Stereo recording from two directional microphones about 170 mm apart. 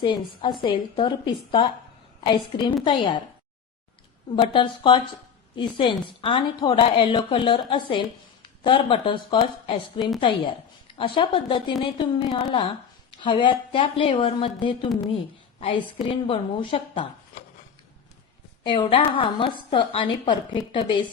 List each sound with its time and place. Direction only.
0.0 s a woman's voice: 30° left (ahead or behind)
4.4 s a woman's voice: 30° left (ahead or behind)
16.0 s a woman's voice: 30° left (ahead or behind)
18.6 s a woman's voice: 30° left (ahead or behind)